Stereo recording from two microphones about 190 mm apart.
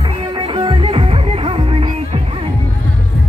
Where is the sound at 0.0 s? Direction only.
25° right (ahead or behind).